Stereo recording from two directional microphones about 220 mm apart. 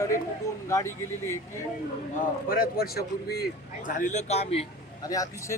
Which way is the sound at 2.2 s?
40° left (ahead or behind).